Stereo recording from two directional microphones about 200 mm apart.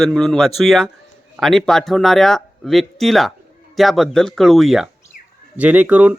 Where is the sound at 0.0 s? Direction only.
Centre (ahead or behind).